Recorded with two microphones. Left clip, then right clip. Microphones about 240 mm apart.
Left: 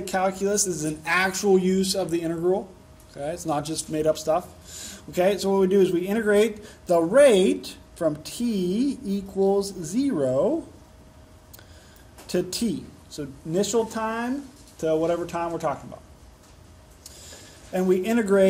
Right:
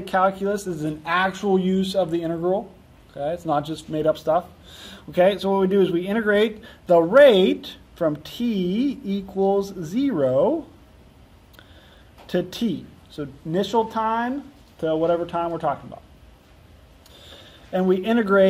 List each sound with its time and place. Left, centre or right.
0.0 s speech: right
8.6 s speech: centre
9.4 s speech: right
12.3 s speech: right
17.7 s speech: right